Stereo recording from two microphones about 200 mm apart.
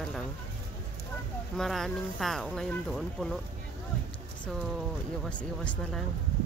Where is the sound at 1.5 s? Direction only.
Centre (ahead or behind).